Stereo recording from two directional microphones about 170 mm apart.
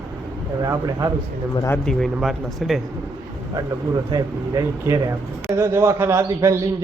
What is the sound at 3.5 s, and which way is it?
A man's voice, 20° right (ahead or behind).